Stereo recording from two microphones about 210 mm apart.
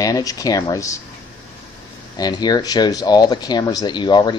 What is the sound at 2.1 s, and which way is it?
Speech, 20° left (ahead or behind).